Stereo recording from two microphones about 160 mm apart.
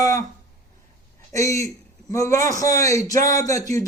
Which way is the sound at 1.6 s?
20° left (ahead or behind).